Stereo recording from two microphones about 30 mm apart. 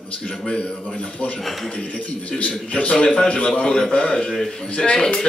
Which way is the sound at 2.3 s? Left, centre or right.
Left.